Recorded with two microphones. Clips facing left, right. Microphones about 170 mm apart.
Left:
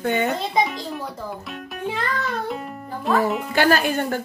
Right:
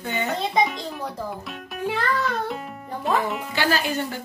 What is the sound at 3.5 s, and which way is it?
Speech, 50° left (ahead or behind).